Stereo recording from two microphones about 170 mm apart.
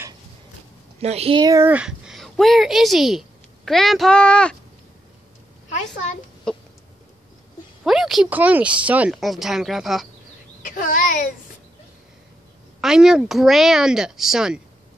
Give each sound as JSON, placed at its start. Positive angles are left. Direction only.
{"t": 0.9, "sound": "a woman's voice", "side_deg": -35}
{"t": 1.4, "sound": "speech", "side_deg": -20}
{"t": 1.7, "sound": "speech", "side_deg": -5}
{"t": 5.7, "sound": "a woman's voice", "side_deg": 45}
{"t": 7.8, "sound": "speech", "side_deg": 0}
{"t": 10.7, "sound": "a child's voice", "side_deg": 55}
{"t": 12.8, "sound": "speech", "side_deg": -5}